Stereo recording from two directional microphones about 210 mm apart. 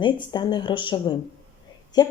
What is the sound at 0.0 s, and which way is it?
Speech, 20° left (ahead or behind).